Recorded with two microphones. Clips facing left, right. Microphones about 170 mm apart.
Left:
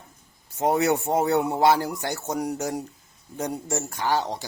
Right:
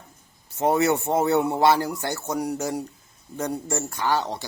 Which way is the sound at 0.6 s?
15° left (ahead or behind).